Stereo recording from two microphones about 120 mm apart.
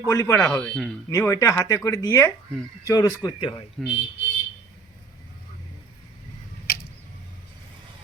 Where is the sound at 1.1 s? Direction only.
25° left (ahead or behind).